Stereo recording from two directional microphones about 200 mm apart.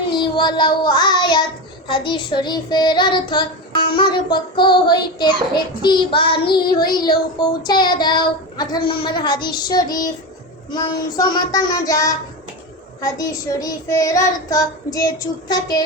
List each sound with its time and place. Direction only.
0.2 s child singing: 25° left (ahead or behind)